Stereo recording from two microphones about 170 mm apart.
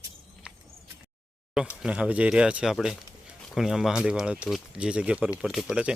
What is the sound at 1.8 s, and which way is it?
Speech, 5° right (ahead or behind).